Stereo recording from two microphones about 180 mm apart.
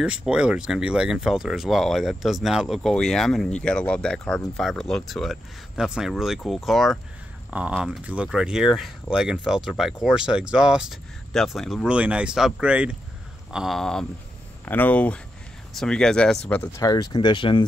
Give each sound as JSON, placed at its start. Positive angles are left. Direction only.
{"t": 0.0, "sound": "speech", "side_deg": -5}